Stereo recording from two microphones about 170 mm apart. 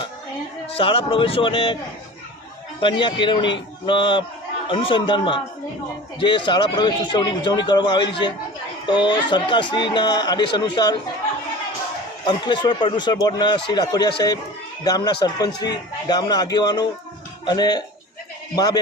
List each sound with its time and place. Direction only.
0.7 s a man's voice: 35° left (ahead or behind)
2.8 s a man's voice: 30° left (ahead or behind)
12.2 s a man's voice: 25° left (ahead or behind)